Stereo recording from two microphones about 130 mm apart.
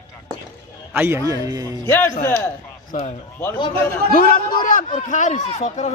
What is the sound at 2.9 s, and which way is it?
Speech, 90° left.